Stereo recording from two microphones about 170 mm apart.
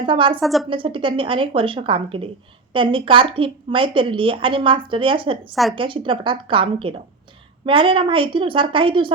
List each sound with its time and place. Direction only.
0.0 s a woman's voice: 30° right (ahead or behind)
0.3 s a woman's voice: centre (ahead or behind)
0.7 s a woman's voice: 30° right (ahead or behind)
5.4 s a woman's voice: centre (ahead or behind)
5.7 s a woman's voice: 30° right (ahead or behind)